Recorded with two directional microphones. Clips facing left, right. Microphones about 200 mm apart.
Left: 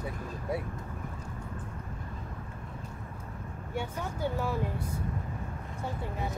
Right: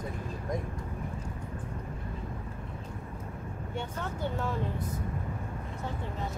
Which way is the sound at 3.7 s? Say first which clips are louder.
Left 2 dB; 10° left (ahead or behind).